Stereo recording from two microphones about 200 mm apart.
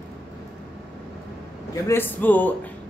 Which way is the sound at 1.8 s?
10° left (ahead or behind).